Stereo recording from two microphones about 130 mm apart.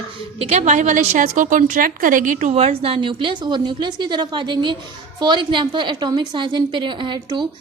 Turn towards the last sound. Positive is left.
turn(degrees=-35)  # may be behind; listen again after turning